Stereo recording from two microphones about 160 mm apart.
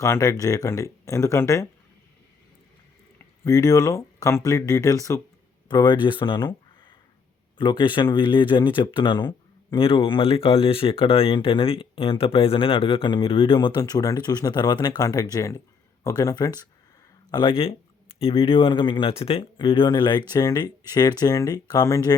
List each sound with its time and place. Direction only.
0.0 s speech: 20° left (ahead or behind)
3.2 s speech: 20° left (ahead or behind)
7.6 s speech: 30° left (ahead or behind)